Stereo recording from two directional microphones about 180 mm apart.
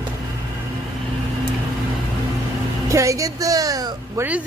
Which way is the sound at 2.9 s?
15° right (ahead or behind).